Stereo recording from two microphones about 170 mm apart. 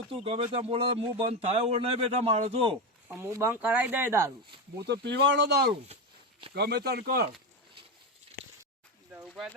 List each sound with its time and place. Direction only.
0.1 s speech: 35° right (ahead or behind)
3.1 s speech: 15° right (ahead or behind)
4.8 s speech: 75° right (ahead or behind)
9.1 s a sound: centre (ahead or behind)